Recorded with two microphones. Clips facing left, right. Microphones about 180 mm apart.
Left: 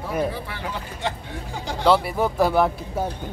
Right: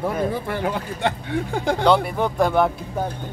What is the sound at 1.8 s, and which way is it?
Speech, 5° left (ahead or behind).